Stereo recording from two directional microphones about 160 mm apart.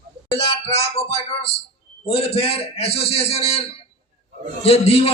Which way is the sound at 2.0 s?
40° left (ahead or behind).